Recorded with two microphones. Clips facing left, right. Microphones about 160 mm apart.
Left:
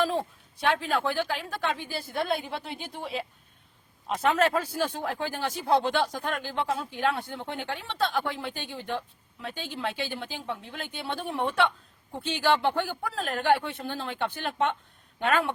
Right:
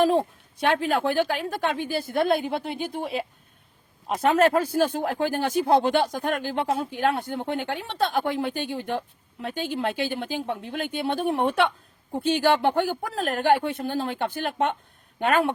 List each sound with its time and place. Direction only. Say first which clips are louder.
0.0 s speech: right 7 dB; 50° right (ahead or behind)